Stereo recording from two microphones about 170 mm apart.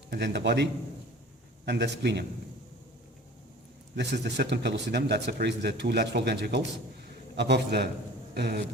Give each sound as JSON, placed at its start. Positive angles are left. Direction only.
{"t": 0.1, "sound": "a man's voice", "side_deg": -80}
{"t": 3.9, "sound": "a man's voice", "side_deg": -90}
{"t": 8.4, "sound": "speech", "side_deg": -70}